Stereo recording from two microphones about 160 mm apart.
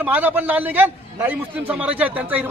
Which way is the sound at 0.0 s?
10° right (ahead or behind).